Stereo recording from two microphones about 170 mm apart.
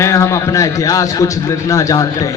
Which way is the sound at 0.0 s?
15° left (ahead or behind).